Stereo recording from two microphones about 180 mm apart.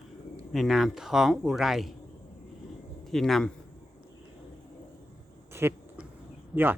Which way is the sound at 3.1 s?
Centre (ahead or behind).